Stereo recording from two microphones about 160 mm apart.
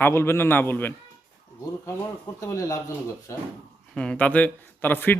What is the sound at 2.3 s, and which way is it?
Speech, 20° left (ahead or behind).